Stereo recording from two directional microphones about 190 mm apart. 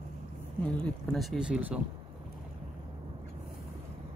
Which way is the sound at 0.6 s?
5° left (ahead or behind).